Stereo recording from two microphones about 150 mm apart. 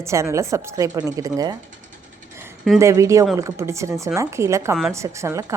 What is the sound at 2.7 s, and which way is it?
A woman's voice, 20° right (ahead or behind).